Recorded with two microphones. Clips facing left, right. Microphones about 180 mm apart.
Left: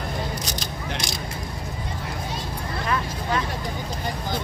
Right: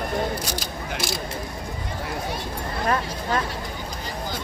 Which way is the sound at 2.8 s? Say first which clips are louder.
Right 3 dB; 45° right (ahead or behind).